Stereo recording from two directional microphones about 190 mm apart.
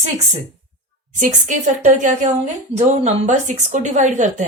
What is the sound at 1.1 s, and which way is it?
A woman's voice, 40° right (ahead or behind).